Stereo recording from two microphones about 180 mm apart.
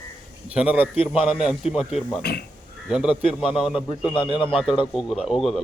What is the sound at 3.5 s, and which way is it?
Speech, 30° left (ahead or behind).